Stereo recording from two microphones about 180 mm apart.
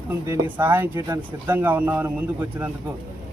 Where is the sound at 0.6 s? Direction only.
10° right (ahead or behind).